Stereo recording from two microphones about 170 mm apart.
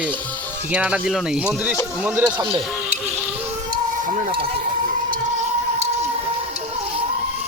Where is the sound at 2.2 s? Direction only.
25° right (ahead or behind).